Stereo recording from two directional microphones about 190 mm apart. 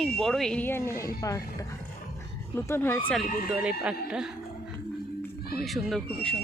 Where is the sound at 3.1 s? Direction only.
Centre (ahead or behind).